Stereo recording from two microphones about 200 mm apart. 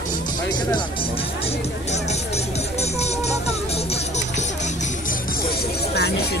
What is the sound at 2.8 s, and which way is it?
Music, 30° left (ahead or behind).